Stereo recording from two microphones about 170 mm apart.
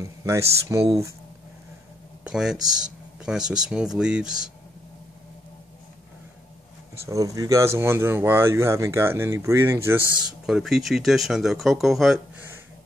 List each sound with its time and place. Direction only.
0.0 s speech: 20° right (ahead or behind)
2.2 s speech: 5° right (ahead or behind)
7.1 s speech: 20° right (ahead or behind)
10.2 s speech: 5° right (ahead or behind)